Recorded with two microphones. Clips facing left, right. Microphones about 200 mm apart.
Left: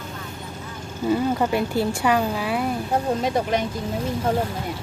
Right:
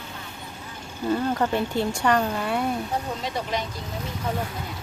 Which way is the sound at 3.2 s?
50° left (ahead or behind).